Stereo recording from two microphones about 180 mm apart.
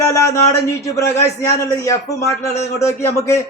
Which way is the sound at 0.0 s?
15° left (ahead or behind).